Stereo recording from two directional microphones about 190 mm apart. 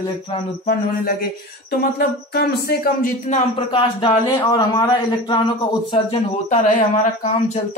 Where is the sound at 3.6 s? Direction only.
25° left (ahead or behind).